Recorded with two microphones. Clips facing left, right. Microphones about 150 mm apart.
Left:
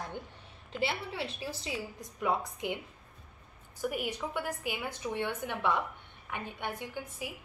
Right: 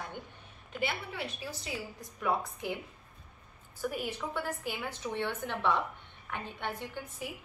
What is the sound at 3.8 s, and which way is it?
A woman's voice, 15° left (ahead or behind).